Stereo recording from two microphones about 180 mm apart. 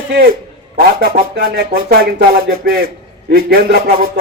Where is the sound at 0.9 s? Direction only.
55° right (ahead or behind).